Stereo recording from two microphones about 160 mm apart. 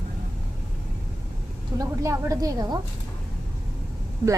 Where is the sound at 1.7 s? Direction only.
20° right (ahead or behind).